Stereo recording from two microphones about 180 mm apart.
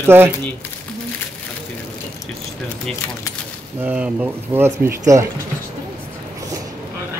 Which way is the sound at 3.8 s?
10° right (ahead or behind).